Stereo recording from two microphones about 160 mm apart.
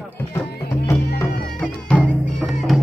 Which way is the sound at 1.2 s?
70° left (ahead or behind).